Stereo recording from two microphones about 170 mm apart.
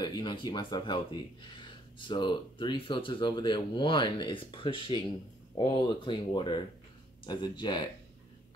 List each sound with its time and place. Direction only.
0.0 s speech: 25° left (ahead or behind)